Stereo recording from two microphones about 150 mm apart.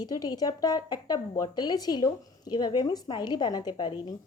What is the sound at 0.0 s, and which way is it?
A woman's voice, 25° left (ahead or behind).